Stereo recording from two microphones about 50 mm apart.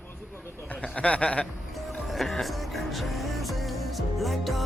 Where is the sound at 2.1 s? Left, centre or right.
Centre.